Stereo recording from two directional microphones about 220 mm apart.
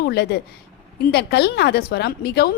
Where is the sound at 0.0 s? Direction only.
50° left (ahead or behind).